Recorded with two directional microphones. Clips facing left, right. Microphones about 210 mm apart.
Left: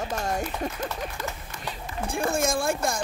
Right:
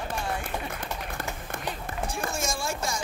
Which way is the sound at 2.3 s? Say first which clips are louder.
Left 10 dB; 55° left (ahead or behind).